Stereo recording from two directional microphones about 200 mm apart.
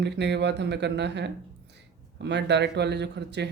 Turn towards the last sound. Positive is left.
turn(degrees=-60)  # may be behind; listen again after turning